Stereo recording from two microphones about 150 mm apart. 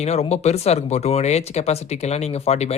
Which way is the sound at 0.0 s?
45° left (ahead or behind).